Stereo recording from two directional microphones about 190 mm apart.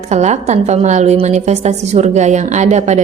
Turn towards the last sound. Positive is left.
turn(degrees=-35)  # may be behind; listen again after turning